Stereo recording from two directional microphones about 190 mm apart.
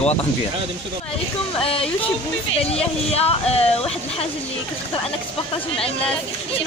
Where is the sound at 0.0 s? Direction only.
35° left (ahead or behind).